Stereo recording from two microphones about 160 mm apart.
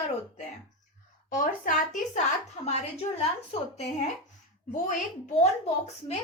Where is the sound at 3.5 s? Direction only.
40° left (ahead or behind).